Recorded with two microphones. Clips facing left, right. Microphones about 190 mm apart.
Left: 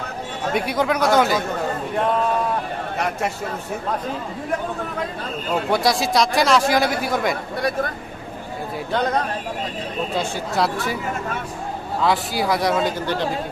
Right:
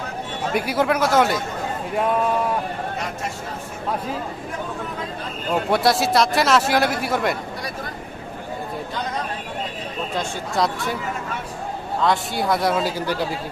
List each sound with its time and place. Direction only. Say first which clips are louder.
0.5 s a man's voice: right 1 dB; 5° right (ahead or behind)
3.0 s speech: left 5 dB; 65° left (ahead or behind)
5.7 s a man's voice: right 1 dB; centre (ahead or behind)
10.2 s a man's voice: even; centre (ahead or behind)
11.9 s a man's voice: left 1 dB; centre (ahead or behind)